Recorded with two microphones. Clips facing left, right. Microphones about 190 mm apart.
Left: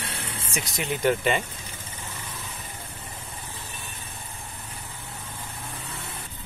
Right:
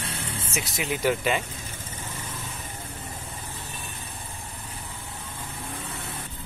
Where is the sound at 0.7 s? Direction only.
5° right (ahead or behind).